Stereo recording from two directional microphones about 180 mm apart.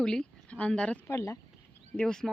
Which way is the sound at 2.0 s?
5° left (ahead or behind).